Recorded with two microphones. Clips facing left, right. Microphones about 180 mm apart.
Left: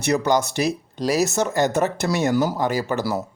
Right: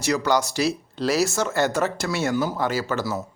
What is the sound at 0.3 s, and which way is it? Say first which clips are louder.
Speech: left 1 dB; 20° left (ahead or behind).